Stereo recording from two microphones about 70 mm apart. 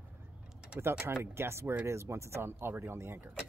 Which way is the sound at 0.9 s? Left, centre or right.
Centre.